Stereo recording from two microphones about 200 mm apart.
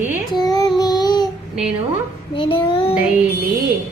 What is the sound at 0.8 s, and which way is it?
Child singing, 20° left (ahead or behind).